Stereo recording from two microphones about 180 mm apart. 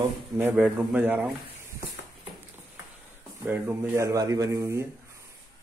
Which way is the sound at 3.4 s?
10° right (ahead or behind).